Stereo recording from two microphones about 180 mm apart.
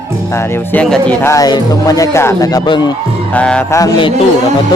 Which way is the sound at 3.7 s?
25° left (ahead or behind).